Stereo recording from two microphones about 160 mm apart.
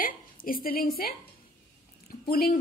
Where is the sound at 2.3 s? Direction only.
70° left (ahead or behind).